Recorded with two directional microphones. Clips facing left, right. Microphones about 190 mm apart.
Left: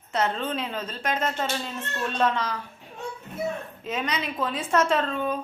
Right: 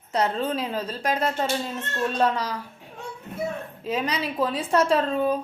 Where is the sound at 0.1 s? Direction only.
35° right (ahead or behind).